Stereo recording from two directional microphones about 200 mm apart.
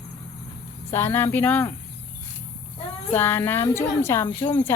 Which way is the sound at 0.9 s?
10° left (ahead or behind).